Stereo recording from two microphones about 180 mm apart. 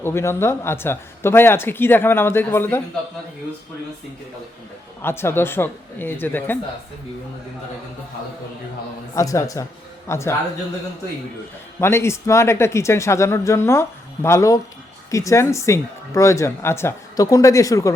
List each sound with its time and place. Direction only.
0.0 s speech: 15° left (ahead or behind)
5.0 s speech: 15° left (ahead or behind)
9.1 s speech: 15° left (ahead or behind)
11.8 s speech: 15° left (ahead or behind)